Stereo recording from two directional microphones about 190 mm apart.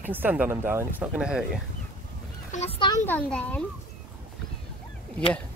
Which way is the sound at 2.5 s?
35° left (ahead or behind).